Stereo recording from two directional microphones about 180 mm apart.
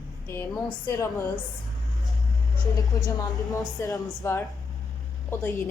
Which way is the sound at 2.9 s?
20° left (ahead or behind).